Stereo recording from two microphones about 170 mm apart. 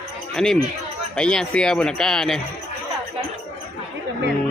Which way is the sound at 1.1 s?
5° left (ahead or behind).